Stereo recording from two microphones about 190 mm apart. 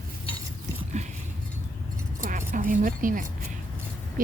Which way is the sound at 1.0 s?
35° right (ahead or behind).